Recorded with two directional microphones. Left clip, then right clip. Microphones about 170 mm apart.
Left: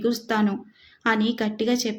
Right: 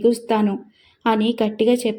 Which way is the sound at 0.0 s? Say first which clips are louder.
Right 6 dB; 15° right (ahead or behind).